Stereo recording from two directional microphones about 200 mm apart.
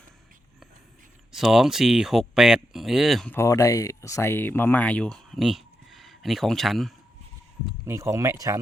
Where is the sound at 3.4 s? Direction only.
15° left (ahead or behind); by 6.9 s centre (ahead or behind).